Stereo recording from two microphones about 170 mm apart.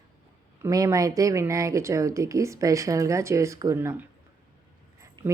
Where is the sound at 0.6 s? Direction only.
20° right (ahead or behind).